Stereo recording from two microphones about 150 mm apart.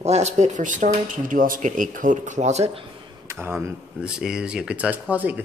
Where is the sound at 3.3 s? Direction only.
15° right (ahead or behind).